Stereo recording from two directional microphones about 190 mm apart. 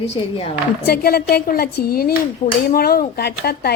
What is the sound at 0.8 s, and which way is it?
A woman's voice, 55° left (ahead or behind).